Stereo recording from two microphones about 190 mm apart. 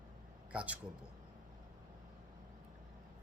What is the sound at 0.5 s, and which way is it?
Speech, 5° right (ahead or behind).